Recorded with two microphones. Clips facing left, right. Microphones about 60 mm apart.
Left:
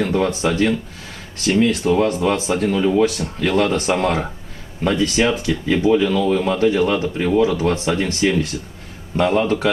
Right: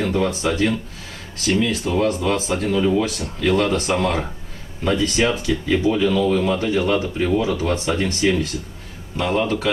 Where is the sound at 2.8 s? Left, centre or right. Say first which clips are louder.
Left 2 dB; centre.